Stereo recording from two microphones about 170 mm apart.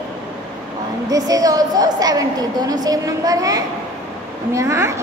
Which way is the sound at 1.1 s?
20° right (ahead or behind).